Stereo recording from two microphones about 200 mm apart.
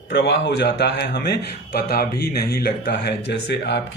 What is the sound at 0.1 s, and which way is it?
A man's voice, 60° left (ahead or behind).